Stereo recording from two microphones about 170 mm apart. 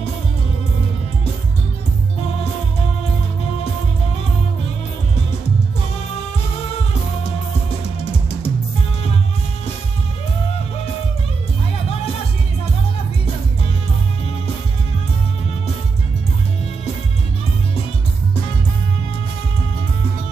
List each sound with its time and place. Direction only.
8.0 s music: 35° left (ahead or behind)